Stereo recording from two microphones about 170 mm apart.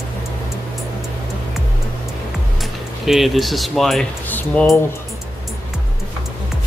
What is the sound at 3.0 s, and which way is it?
Speech, centre (ahead or behind).